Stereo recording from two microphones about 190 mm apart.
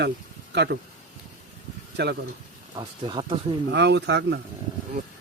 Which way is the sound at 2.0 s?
60° right (ahead or behind).